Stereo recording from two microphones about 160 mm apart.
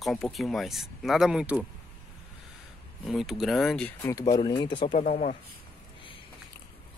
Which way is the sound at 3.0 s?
Centre (ahead or behind).